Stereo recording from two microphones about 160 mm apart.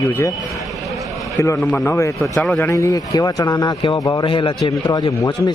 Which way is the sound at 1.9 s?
15° left (ahead or behind).